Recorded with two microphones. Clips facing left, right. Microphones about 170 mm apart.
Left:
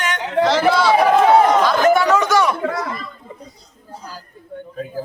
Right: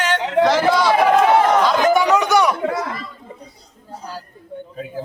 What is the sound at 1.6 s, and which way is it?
Chatter, 15° right (ahead or behind).